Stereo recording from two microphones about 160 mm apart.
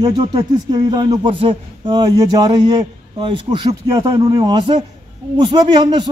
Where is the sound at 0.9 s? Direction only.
30° right (ahead or behind).